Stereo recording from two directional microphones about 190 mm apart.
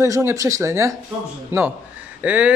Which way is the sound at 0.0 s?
15° right (ahead or behind).